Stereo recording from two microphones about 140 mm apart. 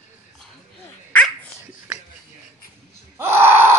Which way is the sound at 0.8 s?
10° left (ahead or behind).